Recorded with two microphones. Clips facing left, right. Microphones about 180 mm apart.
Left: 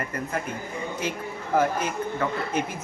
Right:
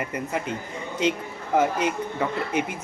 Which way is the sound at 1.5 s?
20° right (ahead or behind).